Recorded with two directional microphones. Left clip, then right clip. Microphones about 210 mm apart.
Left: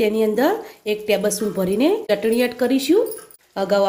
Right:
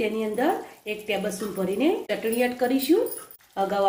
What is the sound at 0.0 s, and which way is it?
A woman's voice, 50° left (ahead or behind).